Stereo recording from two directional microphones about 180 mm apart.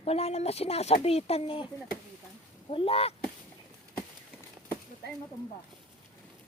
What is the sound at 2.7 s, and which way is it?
Speech, 30° left (ahead or behind).